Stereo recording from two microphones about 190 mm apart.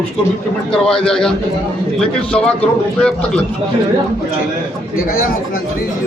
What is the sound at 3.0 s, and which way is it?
Speech, 5° left (ahead or behind).